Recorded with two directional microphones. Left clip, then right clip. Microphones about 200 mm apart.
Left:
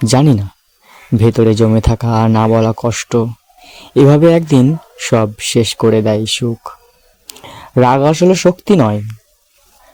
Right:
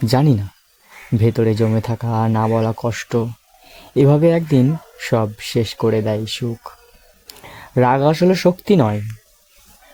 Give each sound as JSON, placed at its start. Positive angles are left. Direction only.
{"t": 0.0, "sound": "speech", "side_deg": 15}